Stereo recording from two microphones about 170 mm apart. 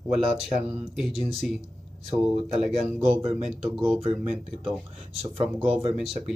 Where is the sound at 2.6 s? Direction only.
Centre (ahead or behind).